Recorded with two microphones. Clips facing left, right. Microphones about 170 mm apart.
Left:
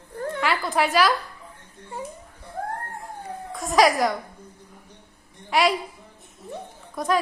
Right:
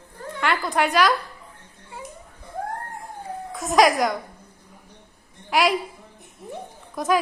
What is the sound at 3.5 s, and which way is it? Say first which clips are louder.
Speech: right 1 dB; centre (ahead or behind).